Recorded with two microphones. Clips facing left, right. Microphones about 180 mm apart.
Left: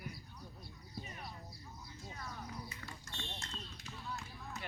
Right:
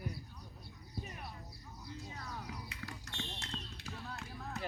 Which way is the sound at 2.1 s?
75° right (ahead or behind).